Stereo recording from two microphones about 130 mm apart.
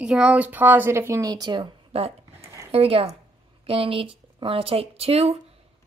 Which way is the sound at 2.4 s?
25° right (ahead or behind).